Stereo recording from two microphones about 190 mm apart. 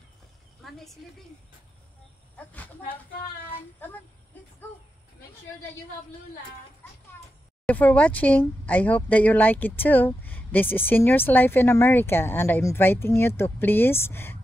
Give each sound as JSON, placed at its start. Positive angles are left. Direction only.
{"t": 2.3, "sound": "speech", "side_deg": 10}
{"t": 3.8, "sound": "speech", "side_deg": 10}
{"t": 7.6, "sound": "speech", "side_deg": 5}